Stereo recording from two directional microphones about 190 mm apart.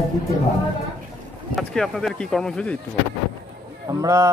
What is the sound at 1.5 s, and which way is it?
Speech, 5° left (ahead or behind).